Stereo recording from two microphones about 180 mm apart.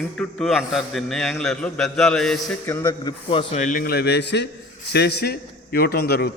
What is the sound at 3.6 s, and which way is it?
A man's voice, 50° left (ahead or behind).